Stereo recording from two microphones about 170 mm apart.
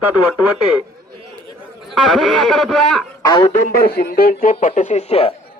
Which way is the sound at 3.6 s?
65° left (ahead or behind).